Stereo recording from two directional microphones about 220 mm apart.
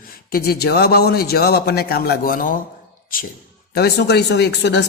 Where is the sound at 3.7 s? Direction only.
45° left (ahead or behind).